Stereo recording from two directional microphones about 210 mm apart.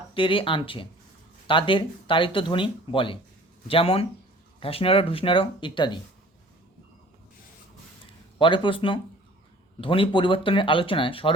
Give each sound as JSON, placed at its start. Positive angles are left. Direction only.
{"t": 0.1, "sound": "speech", "side_deg": 25}
{"t": 8.4, "sound": "speech", "side_deg": 25}